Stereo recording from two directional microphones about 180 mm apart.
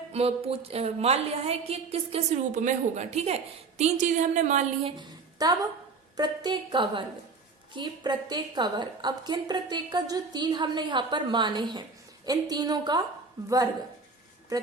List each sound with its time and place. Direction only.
0.1 s a woman's voice: 35° right (ahead or behind)